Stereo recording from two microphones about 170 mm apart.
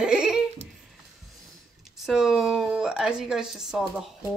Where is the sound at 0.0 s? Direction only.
5° right (ahead or behind).